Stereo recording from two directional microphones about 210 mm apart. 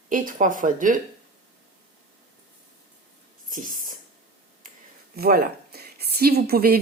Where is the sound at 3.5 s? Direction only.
40° right (ahead or behind).